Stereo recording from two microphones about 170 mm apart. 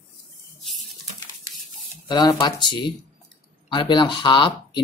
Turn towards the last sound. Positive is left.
turn(degrees=30)  # may be behind; listen again after turning